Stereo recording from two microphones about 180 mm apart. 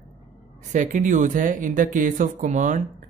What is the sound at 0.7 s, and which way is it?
Speech, 45° right (ahead or behind).